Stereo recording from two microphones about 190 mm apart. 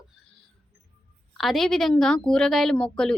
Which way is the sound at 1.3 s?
Centre (ahead or behind).